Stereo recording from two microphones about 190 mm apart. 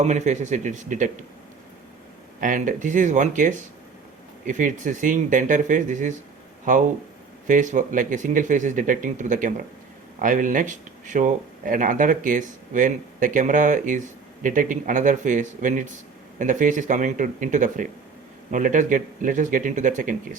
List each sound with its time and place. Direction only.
0.0 s speech: 40° right (ahead or behind)
2.4 s speech: 45° right (ahead or behind)
7.4 s speech: 40° right (ahead or behind)